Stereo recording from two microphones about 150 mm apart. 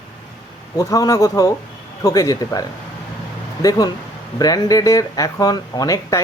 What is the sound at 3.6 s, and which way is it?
Speech, 25° left (ahead or behind).